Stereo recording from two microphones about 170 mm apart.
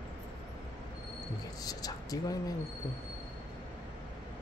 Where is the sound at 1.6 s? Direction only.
20° left (ahead or behind).